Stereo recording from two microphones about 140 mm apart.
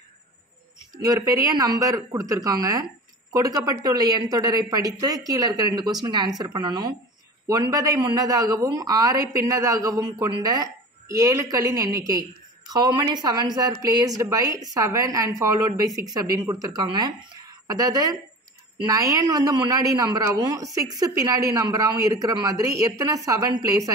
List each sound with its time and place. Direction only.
0.9 s speech: 25° right (ahead or behind)